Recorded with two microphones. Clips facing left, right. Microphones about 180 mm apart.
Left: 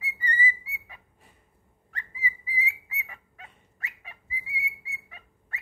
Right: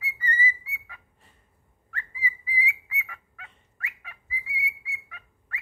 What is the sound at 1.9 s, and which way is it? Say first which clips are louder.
Dog: right 1 dB; 20° left (ahead or behind).